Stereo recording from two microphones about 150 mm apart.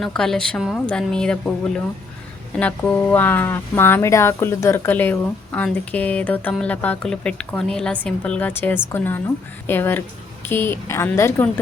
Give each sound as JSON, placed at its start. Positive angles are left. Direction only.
{"t": 0.0, "sound": "a woman's voice", "side_deg": 5}
{"t": 2.6, "sound": "speech", "side_deg": 10}